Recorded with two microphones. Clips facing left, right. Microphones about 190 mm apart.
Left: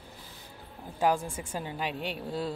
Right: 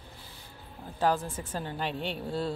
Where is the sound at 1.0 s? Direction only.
15° left (ahead or behind).